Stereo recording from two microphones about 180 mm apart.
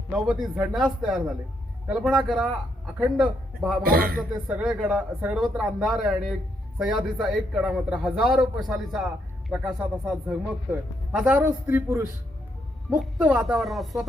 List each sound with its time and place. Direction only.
0.3 s speech: 5° right (ahead or behind)
3.8 s speech: 55° right (ahead or behind)
4.2 s a man's voice: 5° right (ahead or behind)